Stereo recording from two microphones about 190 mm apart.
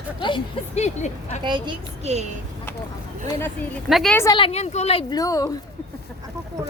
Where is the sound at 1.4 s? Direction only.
25° right (ahead or behind).